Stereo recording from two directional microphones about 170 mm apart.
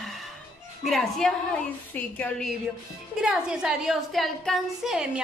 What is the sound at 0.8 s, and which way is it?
A woman's voice, centre (ahead or behind).